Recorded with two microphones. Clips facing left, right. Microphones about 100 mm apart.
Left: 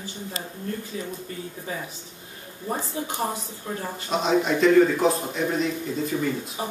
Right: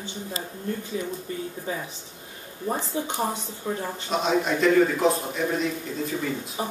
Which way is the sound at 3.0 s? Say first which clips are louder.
Right 2 dB; 25° right (ahead or behind).